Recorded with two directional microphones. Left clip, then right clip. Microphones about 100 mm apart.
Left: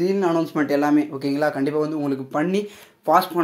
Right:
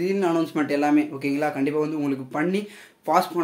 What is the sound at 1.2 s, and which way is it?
Speech, 35° left (ahead or behind).